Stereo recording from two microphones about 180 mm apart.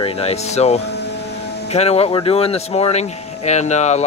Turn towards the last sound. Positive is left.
turn(degrees=40)  # may be behind; listen again after turning